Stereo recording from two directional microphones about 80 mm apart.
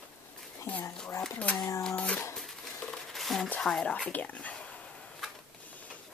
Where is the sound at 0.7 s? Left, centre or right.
Centre.